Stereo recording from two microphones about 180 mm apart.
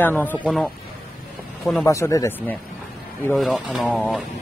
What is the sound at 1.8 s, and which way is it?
Speech, 15° left (ahead or behind).